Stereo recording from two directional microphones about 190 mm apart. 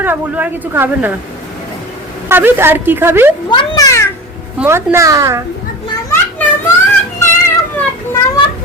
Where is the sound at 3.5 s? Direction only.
20° left (ahead or behind).